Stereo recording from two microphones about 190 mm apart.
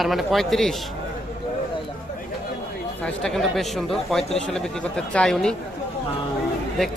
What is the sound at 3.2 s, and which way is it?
Speech, centre (ahead or behind).